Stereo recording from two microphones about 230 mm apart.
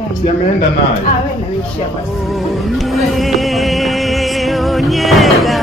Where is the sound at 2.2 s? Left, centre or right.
Centre.